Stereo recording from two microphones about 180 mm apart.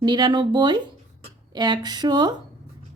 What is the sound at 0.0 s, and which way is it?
A woman's voice, 25° right (ahead or behind).